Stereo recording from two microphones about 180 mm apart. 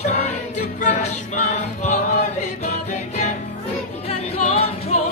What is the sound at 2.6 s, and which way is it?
Music, 40° left (ahead or behind).